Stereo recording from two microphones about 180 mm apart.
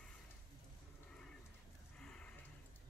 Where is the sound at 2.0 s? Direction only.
5° left (ahead or behind).